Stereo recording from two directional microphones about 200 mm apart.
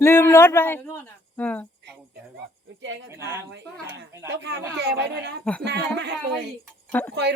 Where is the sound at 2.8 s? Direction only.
65° right (ahead or behind).